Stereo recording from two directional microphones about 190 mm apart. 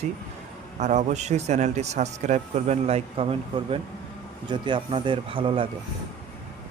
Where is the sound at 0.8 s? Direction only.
35° right (ahead or behind).